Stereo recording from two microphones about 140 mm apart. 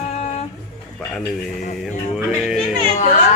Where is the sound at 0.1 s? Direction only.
50° left (ahead or behind).